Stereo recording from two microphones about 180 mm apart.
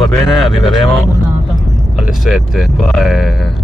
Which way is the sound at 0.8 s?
20° left (ahead or behind).